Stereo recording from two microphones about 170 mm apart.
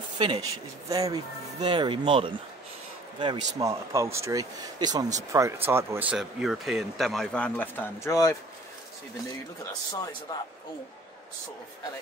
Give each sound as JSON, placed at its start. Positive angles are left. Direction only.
{"t": 0.2, "sound": "speech", "side_deg": -25}
{"t": 10.3, "sound": "speech", "side_deg": 20}